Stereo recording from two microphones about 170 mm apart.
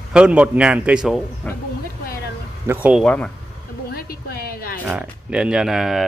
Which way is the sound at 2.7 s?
10° right (ahead or behind).